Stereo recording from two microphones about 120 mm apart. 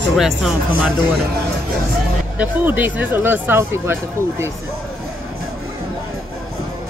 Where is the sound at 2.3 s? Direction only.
15° right (ahead or behind).